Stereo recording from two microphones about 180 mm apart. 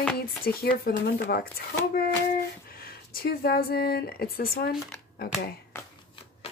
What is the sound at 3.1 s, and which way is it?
Speech, 55° left (ahead or behind).